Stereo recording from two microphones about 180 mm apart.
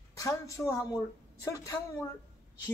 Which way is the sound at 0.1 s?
20° left (ahead or behind).